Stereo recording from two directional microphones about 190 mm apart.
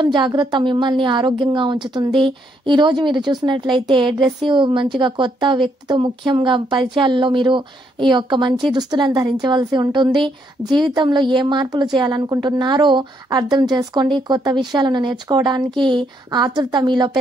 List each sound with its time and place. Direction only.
0.0 s speech: 25° right (ahead or behind)